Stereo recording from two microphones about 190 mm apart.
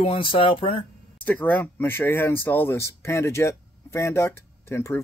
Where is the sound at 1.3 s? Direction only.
10° left (ahead or behind).